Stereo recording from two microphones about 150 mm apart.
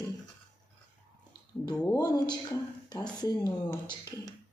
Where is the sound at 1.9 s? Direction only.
25° left (ahead or behind).